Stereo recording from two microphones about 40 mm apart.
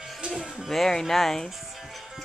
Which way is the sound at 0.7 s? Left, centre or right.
Centre.